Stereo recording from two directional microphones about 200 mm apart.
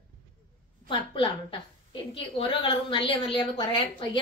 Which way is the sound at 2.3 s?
25° left (ahead or behind).